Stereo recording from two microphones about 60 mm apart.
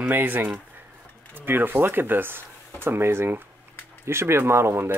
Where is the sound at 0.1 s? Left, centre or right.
Right.